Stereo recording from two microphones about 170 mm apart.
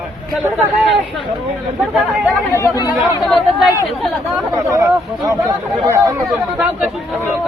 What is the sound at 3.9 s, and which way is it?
Chatter, centre (ahead or behind).